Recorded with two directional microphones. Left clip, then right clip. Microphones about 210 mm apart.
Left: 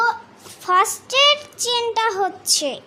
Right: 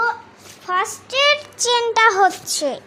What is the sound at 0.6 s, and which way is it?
Child singing, 30° left (ahead or behind).